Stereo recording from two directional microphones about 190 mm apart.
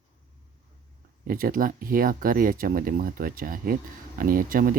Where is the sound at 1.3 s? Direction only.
45° right (ahead or behind).